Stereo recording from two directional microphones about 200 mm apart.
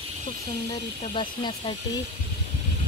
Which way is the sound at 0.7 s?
20° left (ahead or behind).